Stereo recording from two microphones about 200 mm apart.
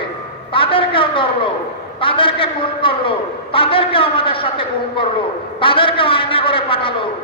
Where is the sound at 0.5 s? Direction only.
25° left (ahead or behind).